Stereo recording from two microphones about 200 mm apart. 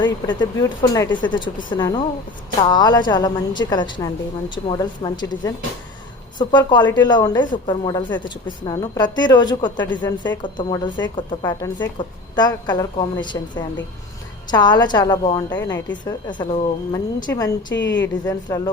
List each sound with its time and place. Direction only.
0.0 s a woman's voice: 25° left (ahead or behind)
17.7 s a woman's voice: 65° left (ahead or behind)
18.3 s a woman's voice: 20° left (ahead or behind)